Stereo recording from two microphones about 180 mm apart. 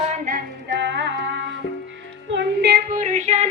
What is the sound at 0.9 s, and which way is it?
Music, 75° right (ahead or behind).